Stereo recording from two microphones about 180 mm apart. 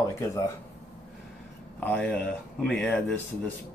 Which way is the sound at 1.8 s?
10° left (ahead or behind).